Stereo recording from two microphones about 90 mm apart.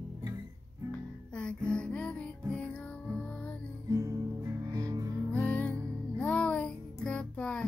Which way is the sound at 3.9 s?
30° right (ahead or behind).